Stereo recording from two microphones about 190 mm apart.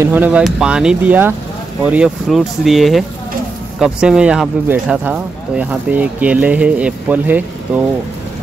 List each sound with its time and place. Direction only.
0.0 s speech: 10° right (ahead or behind)